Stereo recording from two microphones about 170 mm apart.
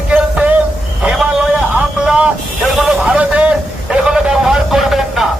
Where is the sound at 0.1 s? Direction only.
10° right (ahead or behind).